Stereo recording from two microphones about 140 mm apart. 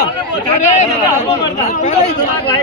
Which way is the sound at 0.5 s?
60° left (ahead or behind).